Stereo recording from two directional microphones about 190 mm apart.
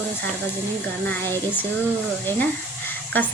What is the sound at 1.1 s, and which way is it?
A woman's voice, 10° left (ahead or behind).